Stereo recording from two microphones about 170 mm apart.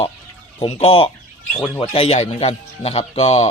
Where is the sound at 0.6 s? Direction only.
35° left (ahead or behind).